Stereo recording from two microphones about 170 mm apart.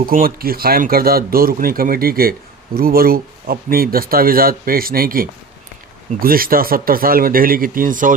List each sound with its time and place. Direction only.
0.0 s speech: 60° right (ahead or behind)